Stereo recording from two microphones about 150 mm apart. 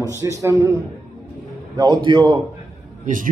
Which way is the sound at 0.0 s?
20° right (ahead or behind).